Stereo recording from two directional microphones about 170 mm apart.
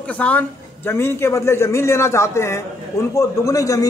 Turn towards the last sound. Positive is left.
turn(degrees=20)  # may be behind; listen again after turning